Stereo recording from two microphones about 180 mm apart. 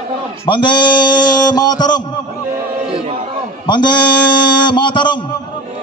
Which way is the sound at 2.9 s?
35° right (ahead or behind).